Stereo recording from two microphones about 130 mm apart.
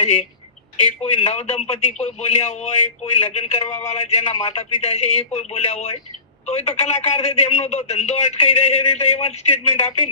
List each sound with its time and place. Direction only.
0.0 s a man's voice: 50° left (ahead or behind)